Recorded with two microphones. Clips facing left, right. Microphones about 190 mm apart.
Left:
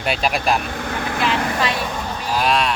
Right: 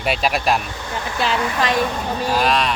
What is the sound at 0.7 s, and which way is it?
Vehicle, 60° left (ahead or behind).